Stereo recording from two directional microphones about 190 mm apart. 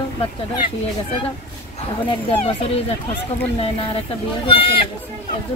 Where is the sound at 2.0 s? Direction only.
30° left (ahead or behind).